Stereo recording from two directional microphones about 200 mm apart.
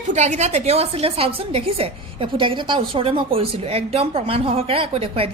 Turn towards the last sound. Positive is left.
turn(degrees=-30)  # may be behind; listen again after turning